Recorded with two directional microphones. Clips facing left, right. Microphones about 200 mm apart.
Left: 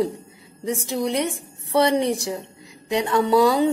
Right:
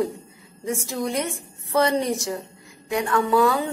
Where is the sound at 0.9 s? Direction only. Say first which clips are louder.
Left 4 dB; 15° left (ahead or behind).